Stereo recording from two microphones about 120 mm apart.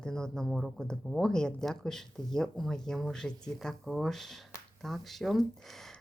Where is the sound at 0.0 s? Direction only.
5° left (ahead or behind).